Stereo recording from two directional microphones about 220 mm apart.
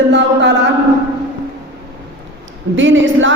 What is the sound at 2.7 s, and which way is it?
Speech, 60° right (ahead or behind).